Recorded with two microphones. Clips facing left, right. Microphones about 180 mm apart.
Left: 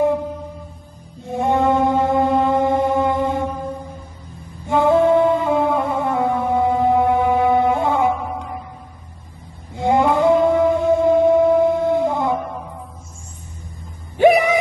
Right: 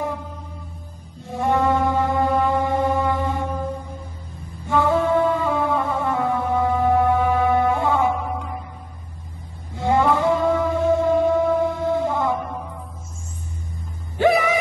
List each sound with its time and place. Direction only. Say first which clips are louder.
1.2 s music: left 3 dB; 20° left (ahead or behind)
4.6 s music: left 5 dB; 20° left (ahead or behind)
9.8 s music: left 3 dB; 20° left (ahead or behind)
14.1 s a sound: left 5 dB; 20° left (ahead or behind)